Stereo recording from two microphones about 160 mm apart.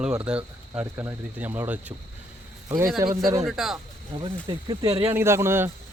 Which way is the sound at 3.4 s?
Centre (ahead or behind).